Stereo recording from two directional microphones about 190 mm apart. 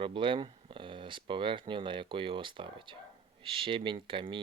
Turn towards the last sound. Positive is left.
turn(degrees=-25)  # may be behind; listen again after turning